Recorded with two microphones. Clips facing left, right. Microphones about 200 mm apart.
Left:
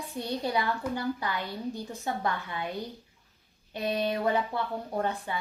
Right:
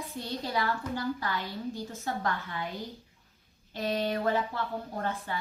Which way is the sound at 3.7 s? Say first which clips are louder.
Left 1 dB; 15° left (ahead or behind).